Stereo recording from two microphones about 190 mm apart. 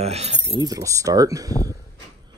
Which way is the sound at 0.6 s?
20° right (ahead or behind).